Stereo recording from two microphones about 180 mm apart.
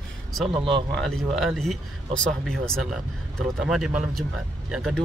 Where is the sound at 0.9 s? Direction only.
Centre (ahead or behind).